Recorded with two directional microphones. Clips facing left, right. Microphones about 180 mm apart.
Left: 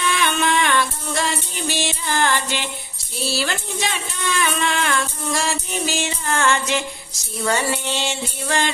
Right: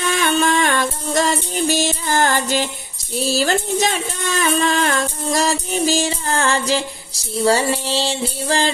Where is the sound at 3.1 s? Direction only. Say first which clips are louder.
Right 6 dB; 40° right (ahead or behind).